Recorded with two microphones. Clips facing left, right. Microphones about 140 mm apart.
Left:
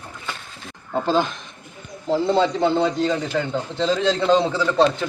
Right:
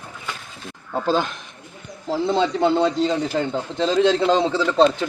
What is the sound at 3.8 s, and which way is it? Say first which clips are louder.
Speech: right 3 dB; 5° right (ahead or behind).